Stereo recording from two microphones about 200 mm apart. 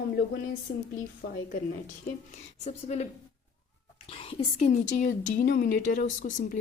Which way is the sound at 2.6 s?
35° left (ahead or behind).